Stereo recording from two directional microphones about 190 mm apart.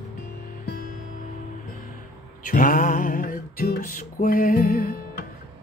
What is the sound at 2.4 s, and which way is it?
Music, 50° left (ahead or behind).